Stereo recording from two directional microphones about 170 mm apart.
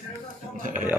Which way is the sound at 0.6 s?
50° right (ahead or behind).